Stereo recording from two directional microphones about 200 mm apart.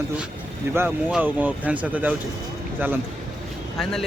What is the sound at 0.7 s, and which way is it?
Speech, 10° right (ahead or behind).